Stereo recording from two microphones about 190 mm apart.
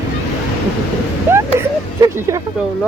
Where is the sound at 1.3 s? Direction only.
10° right (ahead or behind).